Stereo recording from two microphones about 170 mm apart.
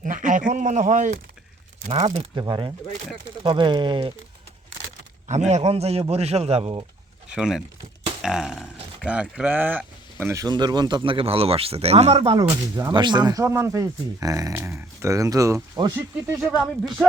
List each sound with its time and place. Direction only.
0.0 s a sound: 50° right (ahead or behind)
1.9 s speech: 25° right (ahead or behind)
5.3 s a man's voice: 40° right (ahead or behind)
7.3 s speech: 5° right (ahead or behind); by 15.9 s 20° right (ahead or behind)
16.0 s speech: 10° right (ahead or behind)